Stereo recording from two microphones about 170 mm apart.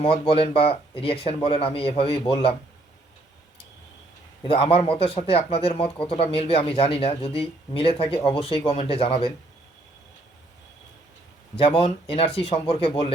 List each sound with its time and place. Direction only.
0.0 s a man's voice: 35° left (ahead or behind)
4.4 s a man's voice: 35° left (ahead or behind)
11.5 s a man's voice: 35° left (ahead or behind)